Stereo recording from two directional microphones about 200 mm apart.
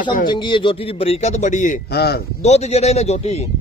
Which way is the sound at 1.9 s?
50° left (ahead or behind).